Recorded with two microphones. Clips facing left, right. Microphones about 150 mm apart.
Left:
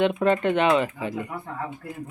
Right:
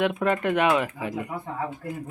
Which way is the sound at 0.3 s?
5° right (ahead or behind).